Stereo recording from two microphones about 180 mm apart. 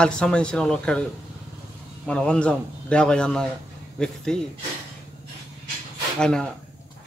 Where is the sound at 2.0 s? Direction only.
5° left (ahead or behind).